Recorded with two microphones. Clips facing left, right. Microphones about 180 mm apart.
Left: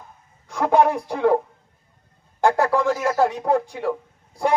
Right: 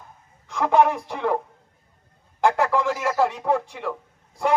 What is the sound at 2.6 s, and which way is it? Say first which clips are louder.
Speech: left 2 dB; 35° left (ahead or behind).